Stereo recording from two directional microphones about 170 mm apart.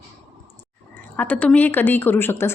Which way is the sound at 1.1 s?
10° left (ahead or behind).